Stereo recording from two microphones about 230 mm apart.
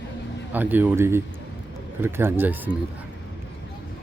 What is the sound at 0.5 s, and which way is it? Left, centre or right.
Speech, centre.